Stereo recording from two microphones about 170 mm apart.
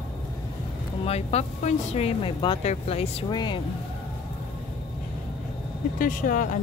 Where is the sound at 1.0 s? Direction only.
40° left (ahead or behind).